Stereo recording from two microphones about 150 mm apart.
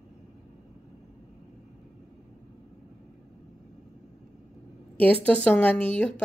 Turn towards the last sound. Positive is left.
turn(degrees=5)  # may be behind; listen again after turning